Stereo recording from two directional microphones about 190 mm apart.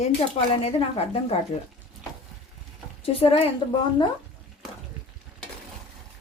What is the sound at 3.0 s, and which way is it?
Speech, 30° left (ahead or behind).